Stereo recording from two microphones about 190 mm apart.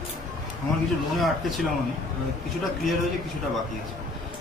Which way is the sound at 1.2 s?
Centre (ahead or behind).